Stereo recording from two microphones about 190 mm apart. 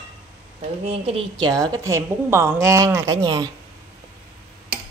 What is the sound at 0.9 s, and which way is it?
A woman's voice, 25° right (ahead or behind).